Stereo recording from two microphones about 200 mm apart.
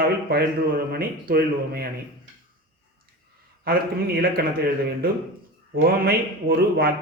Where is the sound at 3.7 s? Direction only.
50° right (ahead or behind).